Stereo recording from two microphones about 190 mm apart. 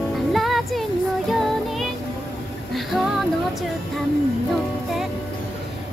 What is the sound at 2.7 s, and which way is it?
Music, centre (ahead or behind).